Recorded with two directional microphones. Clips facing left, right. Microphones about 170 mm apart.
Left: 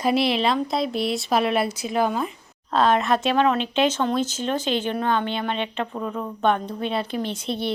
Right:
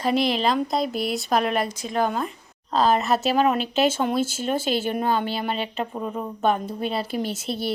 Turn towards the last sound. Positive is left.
turn(degrees=-5)  # may be behind; listen again after turning